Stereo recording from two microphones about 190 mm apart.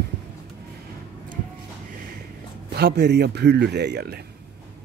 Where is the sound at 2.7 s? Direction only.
60° right (ahead or behind).